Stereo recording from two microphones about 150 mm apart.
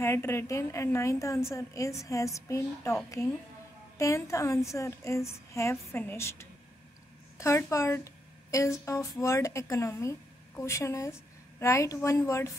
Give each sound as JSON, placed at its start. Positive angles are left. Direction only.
{"t": 0.0, "sound": "a woman's voice", "side_deg": 15}
{"t": 4.0, "sound": "a woman's voice", "side_deg": 20}